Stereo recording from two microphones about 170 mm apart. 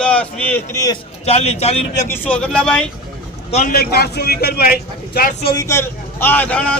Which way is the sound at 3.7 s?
65° left (ahead or behind).